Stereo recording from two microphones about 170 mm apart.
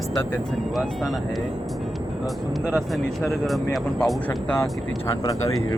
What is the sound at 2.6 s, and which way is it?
Speech, centre (ahead or behind).